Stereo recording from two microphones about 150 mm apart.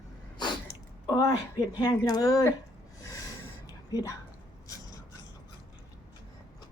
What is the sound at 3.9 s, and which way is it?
Speech, 25° left (ahead or behind).